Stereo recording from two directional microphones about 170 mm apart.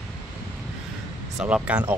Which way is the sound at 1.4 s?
5° right (ahead or behind).